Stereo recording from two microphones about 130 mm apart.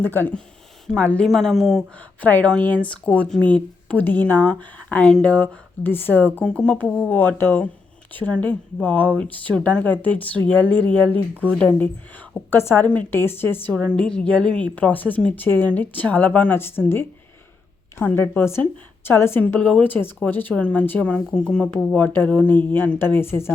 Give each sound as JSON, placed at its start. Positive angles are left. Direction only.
{"t": 0.0, "sound": "a woman's voice", "side_deg": 15}
{"t": 2.2, "sound": "a woman's voice", "side_deg": 10}
{"t": 18.0, "sound": "a woman's voice", "side_deg": 15}